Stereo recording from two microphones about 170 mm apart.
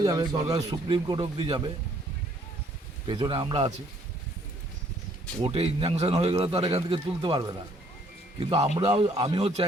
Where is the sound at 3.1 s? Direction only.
30° right (ahead or behind).